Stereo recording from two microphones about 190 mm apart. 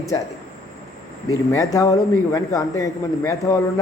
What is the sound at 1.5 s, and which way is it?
A man's voice, 15° left (ahead or behind).